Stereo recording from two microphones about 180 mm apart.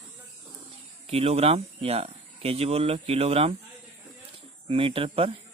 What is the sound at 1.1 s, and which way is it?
Speech, 35° right (ahead or behind).